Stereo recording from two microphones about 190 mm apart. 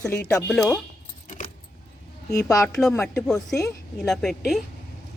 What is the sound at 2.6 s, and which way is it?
Speech, 5° left (ahead or behind).